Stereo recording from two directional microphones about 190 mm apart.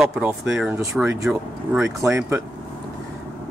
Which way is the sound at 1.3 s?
5° right (ahead or behind).